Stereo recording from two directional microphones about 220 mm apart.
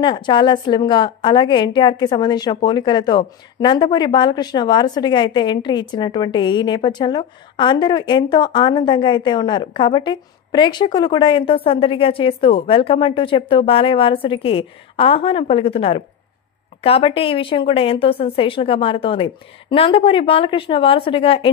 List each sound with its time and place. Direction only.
0.0 s a woman's voice: 20° left (ahead or behind)